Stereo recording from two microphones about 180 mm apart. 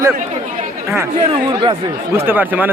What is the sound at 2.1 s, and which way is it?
Speech, 10° right (ahead or behind).